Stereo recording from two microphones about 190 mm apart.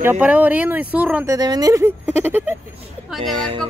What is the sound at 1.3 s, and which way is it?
Speech, 20° right (ahead or behind).